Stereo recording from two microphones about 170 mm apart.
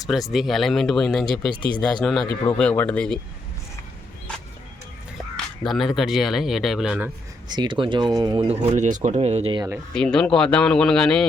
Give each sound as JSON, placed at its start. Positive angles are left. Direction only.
{"t": 0.1, "sound": "a man's voice", "side_deg": 0}
{"t": 5.6, "sound": "a man's voice", "side_deg": 0}
{"t": 7.5, "sound": "speech", "side_deg": -25}
{"t": 8.4, "sound": "speech", "side_deg": -40}
{"t": 9.6, "sound": "speech", "side_deg": -15}
{"t": 9.9, "sound": "a man's voice", "side_deg": 5}